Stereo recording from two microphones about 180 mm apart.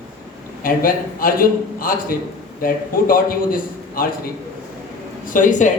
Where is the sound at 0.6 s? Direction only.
50° left (ahead or behind).